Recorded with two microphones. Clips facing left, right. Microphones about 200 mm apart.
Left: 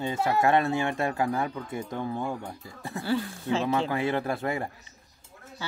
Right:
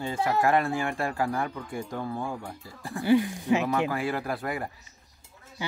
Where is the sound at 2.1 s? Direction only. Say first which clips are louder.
Left 1 dB; 5° right (ahead or behind).